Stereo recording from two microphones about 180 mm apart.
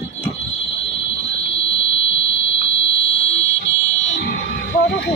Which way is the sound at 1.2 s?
35° left (ahead or behind).